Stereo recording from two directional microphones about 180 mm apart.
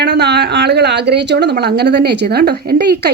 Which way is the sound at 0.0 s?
70° right (ahead or behind).